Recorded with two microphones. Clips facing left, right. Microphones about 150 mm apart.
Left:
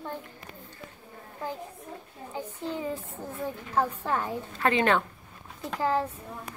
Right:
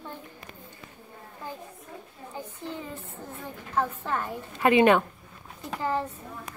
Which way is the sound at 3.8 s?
10° left (ahead or behind).